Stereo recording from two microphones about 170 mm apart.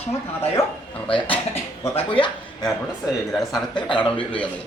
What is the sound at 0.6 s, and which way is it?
Speech, 20° left (ahead or behind).